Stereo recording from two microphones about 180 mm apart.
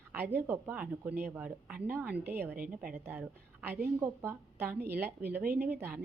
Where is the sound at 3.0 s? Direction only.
10° right (ahead or behind).